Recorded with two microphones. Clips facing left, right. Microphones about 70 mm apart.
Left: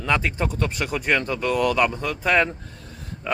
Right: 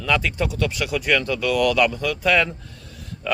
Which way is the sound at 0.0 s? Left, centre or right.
Left.